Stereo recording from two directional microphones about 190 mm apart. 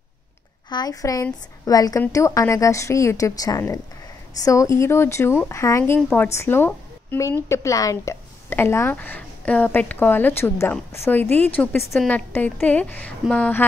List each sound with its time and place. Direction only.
0.7 s a woman's voice: 20° left (ahead or behind)
5.9 s a woman's voice: centre (ahead or behind)
6.2 s a woman's voice: 15° left (ahead or behind)